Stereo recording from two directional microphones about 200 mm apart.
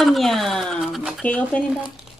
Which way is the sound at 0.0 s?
Centre (ahead or behind).